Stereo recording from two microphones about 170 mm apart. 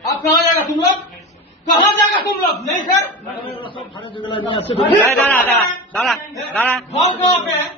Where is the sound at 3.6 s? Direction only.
30° left (ahead or behind).